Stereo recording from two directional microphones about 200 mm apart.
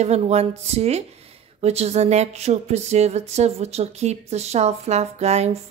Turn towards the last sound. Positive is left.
turn(degrees=-30)  # may be behind; listen again after turning